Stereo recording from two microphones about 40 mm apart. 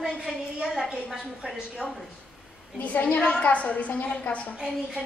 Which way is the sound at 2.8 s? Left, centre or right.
Left.